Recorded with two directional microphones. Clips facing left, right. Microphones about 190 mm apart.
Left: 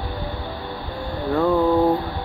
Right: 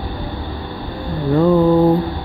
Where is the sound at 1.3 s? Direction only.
15° right (ahead or behind).